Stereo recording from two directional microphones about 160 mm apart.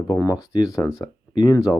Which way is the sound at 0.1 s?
20° left (ahead or behind).